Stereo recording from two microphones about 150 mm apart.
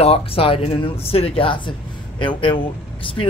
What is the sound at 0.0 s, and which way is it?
A woman's voice, 40° left (ahead or behind).